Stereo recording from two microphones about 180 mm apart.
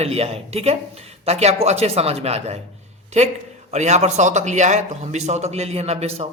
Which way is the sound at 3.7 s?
40° right (ahead or behind).